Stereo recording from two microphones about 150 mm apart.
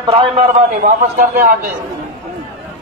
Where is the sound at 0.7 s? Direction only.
70° right (ahead or behind).